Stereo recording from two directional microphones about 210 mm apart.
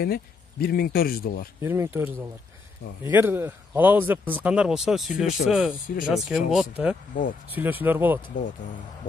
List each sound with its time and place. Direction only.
0.0 s speech: 45° left (ahead or behind)
1.6 s a man's voice: 10° right (ahead or behind)